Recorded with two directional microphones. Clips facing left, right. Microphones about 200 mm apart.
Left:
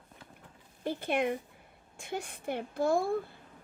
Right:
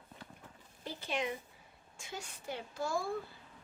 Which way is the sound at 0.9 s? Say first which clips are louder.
Left 7 dB; 55° left (ahead or behind).